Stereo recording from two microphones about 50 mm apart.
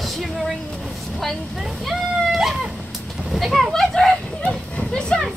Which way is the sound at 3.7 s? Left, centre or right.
Centre.